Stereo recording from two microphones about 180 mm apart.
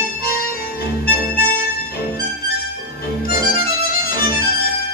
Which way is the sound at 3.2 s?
55° left (ahead or behind).